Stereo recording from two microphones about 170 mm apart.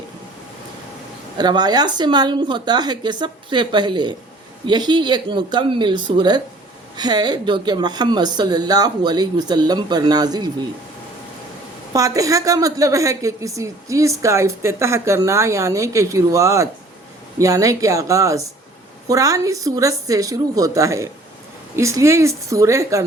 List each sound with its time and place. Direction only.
1.4 s speech: 25° right (ahead or behind)
11.9 s a woman's voice: 20° right (ahead or behind)